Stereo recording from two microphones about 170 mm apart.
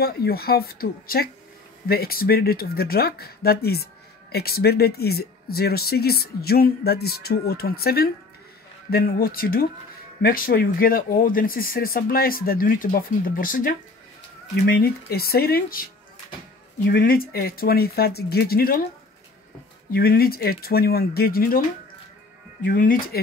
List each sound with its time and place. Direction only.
0.0 s speech: 65° left (ahead or behind)
14.5 s speech: 65° left (ahead or behind)
19.9 s speech: 60° left (ahead or behind)